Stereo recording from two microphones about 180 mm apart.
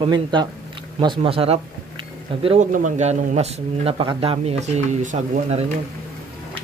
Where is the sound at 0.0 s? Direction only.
25° right (ahead or behind).